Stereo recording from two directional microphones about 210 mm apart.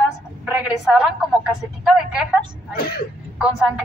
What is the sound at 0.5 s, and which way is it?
A woman's voice, 5° right (ahead or behind).